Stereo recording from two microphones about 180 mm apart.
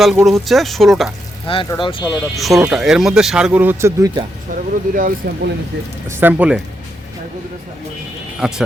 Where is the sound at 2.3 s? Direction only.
Centre (ahead or behind); by 4.3 s 20° right (ahead or behind).